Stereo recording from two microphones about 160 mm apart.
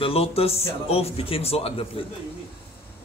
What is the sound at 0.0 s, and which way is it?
Speech, 40° left (ahead or behind).